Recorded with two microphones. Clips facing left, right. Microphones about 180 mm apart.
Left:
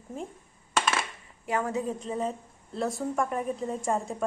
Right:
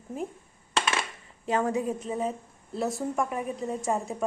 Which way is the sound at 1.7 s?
10° right (ahead or behind).